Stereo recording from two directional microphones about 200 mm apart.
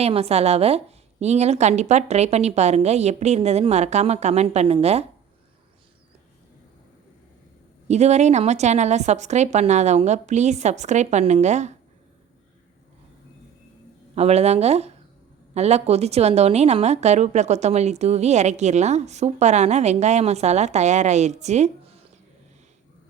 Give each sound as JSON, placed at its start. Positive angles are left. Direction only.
{"t": 0.0, "sound": "a woman's voice", "side_deg": -30}
{"t": 7.9, "sound": "a woman's voice", "side_deg": -35}
{"t": 14.2, "sound": "a woman's voice", "side_deg": -30}